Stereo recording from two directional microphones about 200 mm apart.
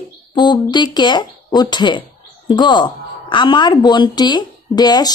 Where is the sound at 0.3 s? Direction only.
20° left (ahead or behind).